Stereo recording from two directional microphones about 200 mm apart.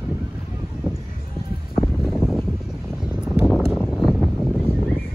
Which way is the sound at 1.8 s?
Centre (ahead or behind).